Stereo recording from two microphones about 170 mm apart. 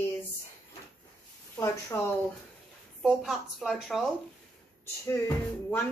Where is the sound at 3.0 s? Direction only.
Centre (ahead or behind).